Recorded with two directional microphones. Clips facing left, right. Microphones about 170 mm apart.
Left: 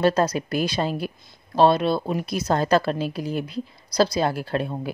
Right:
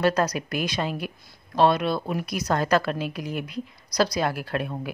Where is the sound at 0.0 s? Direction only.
30° left (ahead or behind).